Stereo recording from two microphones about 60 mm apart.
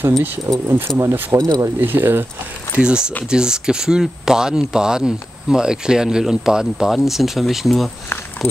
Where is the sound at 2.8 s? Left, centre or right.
Centre.